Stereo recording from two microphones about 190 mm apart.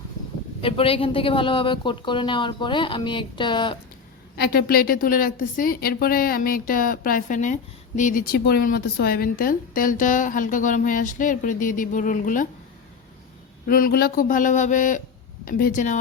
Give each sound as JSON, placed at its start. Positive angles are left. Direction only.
{"t": 0.6, "sound": "a woman's voice", "side_deg": 30}
{"t": 4.4, "sound": "a woman's voice", "side_deg": 50}
{"t": 13.7, "sound": "a woman's voice", "side_deg": 50}